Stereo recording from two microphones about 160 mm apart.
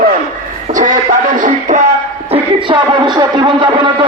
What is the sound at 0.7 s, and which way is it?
Speech, 55° right (ahead or behind).